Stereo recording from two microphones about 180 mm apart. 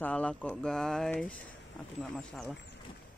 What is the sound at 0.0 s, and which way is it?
Speech, 5° left (ahead or behind).